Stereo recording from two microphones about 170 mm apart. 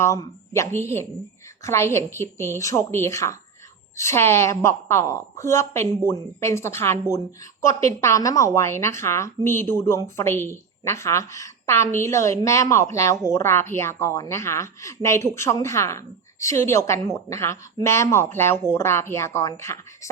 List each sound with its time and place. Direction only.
0.0 s a woman's voice: 15° left (ahead or behind)